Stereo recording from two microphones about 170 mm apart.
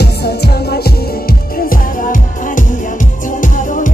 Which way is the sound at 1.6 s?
55° left (ahead or behind).